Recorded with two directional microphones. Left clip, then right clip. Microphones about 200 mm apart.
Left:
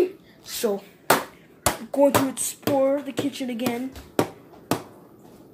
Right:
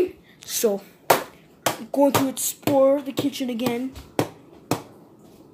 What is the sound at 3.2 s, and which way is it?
Speech, 35° right (ahead or behind).